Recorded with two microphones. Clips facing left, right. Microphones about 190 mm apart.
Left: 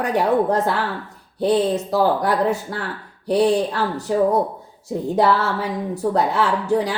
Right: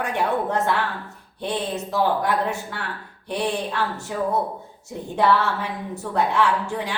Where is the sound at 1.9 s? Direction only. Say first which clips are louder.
Left 2 dB; 35° left (ahead or behind).